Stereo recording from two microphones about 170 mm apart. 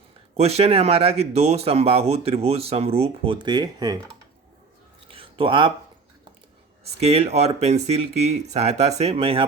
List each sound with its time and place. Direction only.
0.3 s speech: 35° right (ahead or behind)
5.1 s a sound: 30° right (ahead or behind)
6.8 s speech: 35° right (ahead or behind)